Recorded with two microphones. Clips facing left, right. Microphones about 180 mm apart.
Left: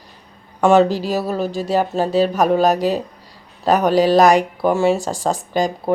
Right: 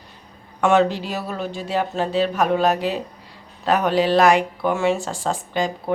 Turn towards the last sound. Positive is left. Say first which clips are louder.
# left 4 dB
turn(degrees=40)  # may be behind; listen again after turning